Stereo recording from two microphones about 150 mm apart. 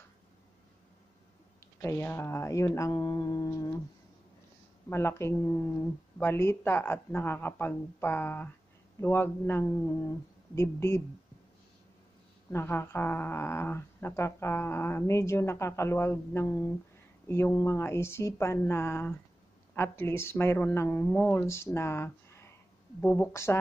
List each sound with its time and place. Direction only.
1.8 s a sound: 15° left (ahead or behind)
4.8 s speech: 15° left (ahead or behind)
12.4 s speech: 15° left (ahead or behind)